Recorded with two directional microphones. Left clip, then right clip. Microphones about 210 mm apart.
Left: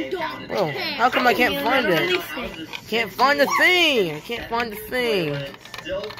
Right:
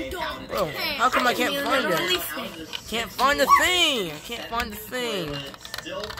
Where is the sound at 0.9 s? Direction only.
Centre (ahead or behind).